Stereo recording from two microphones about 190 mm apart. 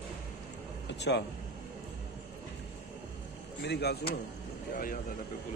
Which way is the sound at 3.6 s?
60° left (ahead or behind).